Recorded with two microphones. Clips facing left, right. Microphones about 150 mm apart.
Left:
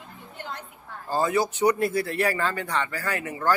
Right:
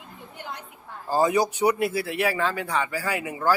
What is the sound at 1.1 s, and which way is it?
Speech, 15° right (ahead or behind).